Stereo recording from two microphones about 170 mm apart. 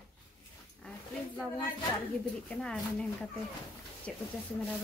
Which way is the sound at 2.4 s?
5° left (ahead or behind).